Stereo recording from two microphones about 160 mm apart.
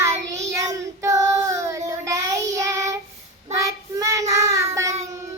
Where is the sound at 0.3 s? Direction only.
20° right (ahead or behind).